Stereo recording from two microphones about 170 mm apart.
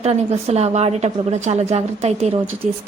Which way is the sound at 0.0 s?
40° right (ahead or behind).